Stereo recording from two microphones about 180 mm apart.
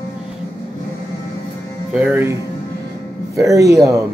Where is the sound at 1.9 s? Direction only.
10° right (ahead or behind).